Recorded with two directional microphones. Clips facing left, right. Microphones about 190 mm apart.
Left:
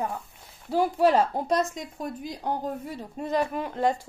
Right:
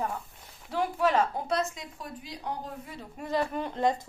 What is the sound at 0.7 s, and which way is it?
A woman's voice, 35° left (ahead or behind).